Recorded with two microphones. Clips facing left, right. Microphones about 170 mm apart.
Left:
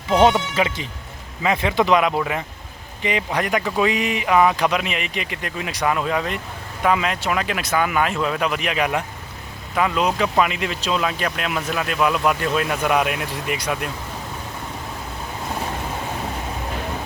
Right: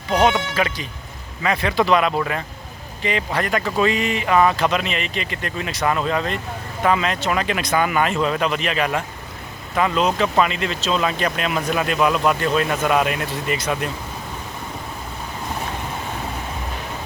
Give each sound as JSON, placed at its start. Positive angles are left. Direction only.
{"t": 0.1, "sound": "speech", "side_deg": 25}